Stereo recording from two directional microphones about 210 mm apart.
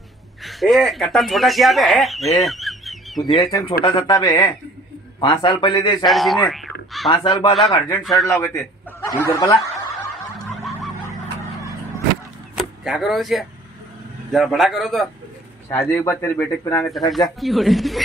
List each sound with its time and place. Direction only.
0.4 s speech: centre (ahead or behind)
3.3 s a man's voice: 20° left (ahead or behind)
6.0 s speech: centre (ahead or behind)
7.1 s a man's voice: 20° left (ahead or behind)
8.0 s speech: centre (ahead or behind)
8.3 s speech: 15° left (ahead or behind)
10.5 s fowl: centre (ahead or behind)
12.5 s speech: centre (ahead or behind)
15.7 s speech: 10° left (ahead or behind)
17.1 s speech: centre (ahead or behind)